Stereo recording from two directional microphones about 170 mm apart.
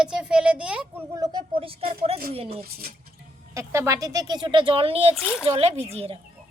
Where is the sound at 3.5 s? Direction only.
15° right (ahead or behind); by 5.2 s 35° right (ahead or behind).